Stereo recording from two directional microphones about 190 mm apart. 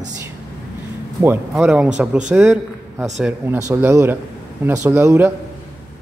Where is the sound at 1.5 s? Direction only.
5° right (ahead or behind).